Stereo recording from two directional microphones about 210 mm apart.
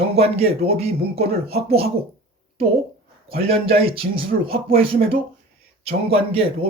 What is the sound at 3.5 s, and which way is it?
Speech, 25° right (ahead or behind).